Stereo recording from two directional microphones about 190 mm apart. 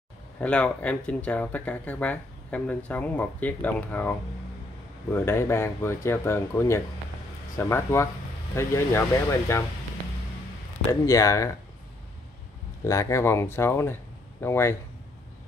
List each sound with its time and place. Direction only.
0.4 s speech: 5° left (ahead or behind)
10.9 s speech: 15° left (ahead or behind)
12.8 s speech: 15° left (ahead or behind)